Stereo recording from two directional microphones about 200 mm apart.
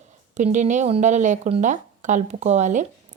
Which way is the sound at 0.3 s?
35° right (ahead or behind).